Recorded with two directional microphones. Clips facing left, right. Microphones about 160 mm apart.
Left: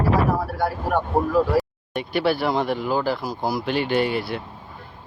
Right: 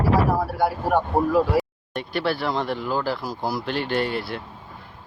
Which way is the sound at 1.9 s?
5° left (ahead or behind).